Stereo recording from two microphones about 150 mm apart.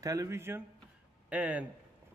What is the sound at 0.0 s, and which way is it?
A man's voice, 20° right (ahead or behind).